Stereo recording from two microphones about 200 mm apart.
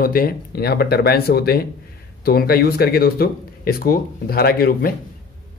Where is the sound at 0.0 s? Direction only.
45° left (ahead or behind).